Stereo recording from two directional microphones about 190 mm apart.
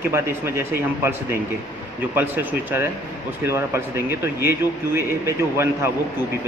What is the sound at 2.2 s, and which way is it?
Speech, 10° right (ahead or behind).